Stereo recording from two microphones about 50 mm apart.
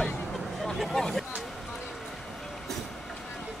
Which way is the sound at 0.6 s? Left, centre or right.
Centre.